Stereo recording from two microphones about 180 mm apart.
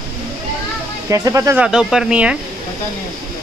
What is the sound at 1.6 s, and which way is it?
Speech, 5° right (ahead or behind).